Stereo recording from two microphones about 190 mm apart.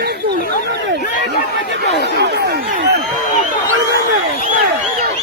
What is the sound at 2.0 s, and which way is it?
Speech, 60° right (ahead or behind).